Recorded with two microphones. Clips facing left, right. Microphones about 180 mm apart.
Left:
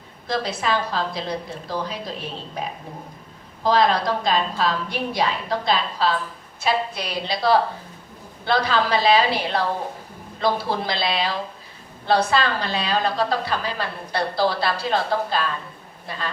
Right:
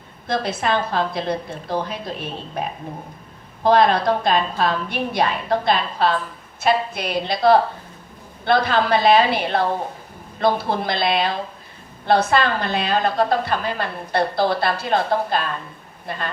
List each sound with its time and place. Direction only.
0.3 s a woman's voice: 55° right (ahead or behind)